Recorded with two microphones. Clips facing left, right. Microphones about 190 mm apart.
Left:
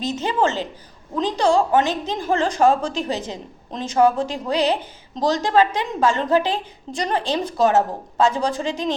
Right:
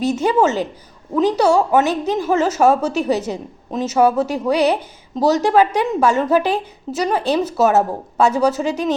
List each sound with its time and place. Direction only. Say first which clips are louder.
0.0 s a woman's voice: right 5 dB; 10° right (ahead or behind)